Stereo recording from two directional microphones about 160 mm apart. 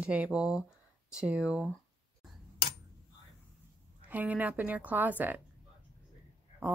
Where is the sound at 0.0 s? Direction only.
10° right (ahead or behind).